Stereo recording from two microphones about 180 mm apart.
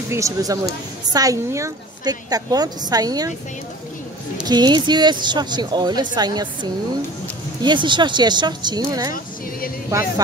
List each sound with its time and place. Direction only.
0.1 s a woman's voice: 20° right (ahead or behind)
4.5 s a woman's voice: 25° right (ahead or behind)